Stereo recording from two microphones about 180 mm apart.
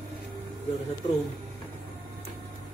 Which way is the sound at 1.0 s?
25° left (ahead or behind).